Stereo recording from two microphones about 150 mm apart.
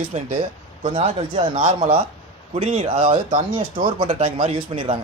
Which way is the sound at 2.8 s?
35° right (ahead or behind).